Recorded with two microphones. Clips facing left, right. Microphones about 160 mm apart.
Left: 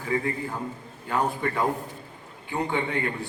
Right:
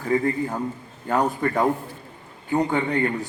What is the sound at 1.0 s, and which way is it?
A man's voice, 45° right (ahead or behind).